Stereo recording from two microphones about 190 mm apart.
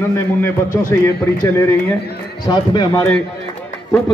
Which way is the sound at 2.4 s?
25° left (ahead or behind).